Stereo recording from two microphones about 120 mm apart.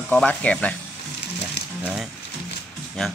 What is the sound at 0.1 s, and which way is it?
Speech, 10° left (ahead or behind).